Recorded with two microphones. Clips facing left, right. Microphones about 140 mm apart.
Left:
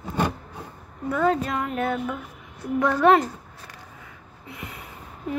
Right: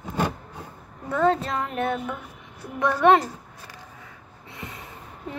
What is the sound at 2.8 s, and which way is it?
Child singing, 25° right (ahead or behind).